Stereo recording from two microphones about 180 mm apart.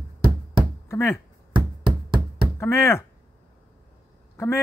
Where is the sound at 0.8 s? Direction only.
15° left (ahead or behind).